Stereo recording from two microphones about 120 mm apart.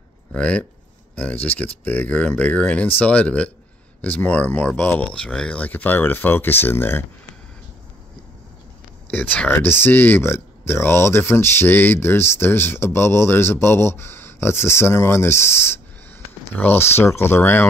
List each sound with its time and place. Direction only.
0.3 s speech: 10° left (ahead or behind)
9.1 s speech: 15° left (ahead or behind)